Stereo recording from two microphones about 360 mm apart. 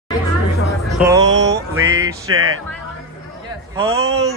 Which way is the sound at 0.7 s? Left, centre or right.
Centre.